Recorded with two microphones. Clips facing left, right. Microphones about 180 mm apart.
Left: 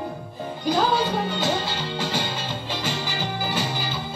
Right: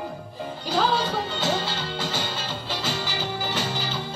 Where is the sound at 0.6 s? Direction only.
15° left (ahead or behind).